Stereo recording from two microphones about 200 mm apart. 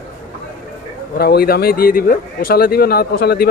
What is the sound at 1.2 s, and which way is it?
Speech, 50° left (ahead or behind).